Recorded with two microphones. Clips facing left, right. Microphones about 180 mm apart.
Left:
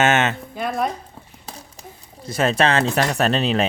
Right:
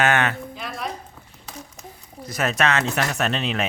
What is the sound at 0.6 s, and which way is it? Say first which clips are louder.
Speech: left 9 dB; 50° left (ahead or behind).